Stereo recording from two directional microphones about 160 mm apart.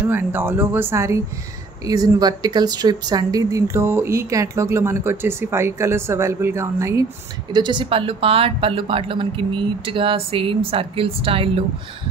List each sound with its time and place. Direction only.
0.0 s speech: 10° right (ahead or behind)
7.5 s speech: 30° right (ahead or behind)